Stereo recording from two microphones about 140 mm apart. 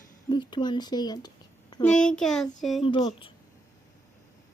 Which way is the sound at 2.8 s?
40° left (ahead or behind).